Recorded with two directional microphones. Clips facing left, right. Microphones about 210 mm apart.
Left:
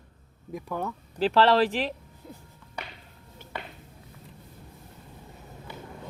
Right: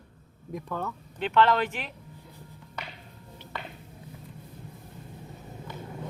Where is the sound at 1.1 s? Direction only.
35° left (ahead or behind).